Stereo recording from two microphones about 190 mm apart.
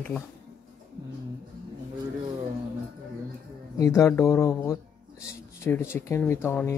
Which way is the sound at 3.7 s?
15° left (ahead or behind).